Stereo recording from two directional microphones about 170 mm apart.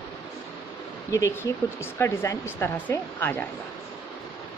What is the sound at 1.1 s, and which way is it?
Speech, 15° left (ahead or behind).